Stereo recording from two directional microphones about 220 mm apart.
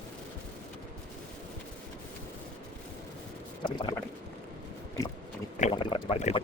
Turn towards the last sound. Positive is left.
turn(degrees=30)  # may be behind; listen again after turning